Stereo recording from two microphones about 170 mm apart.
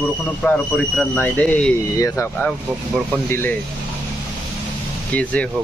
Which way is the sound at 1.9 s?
20° left (ahead or behind).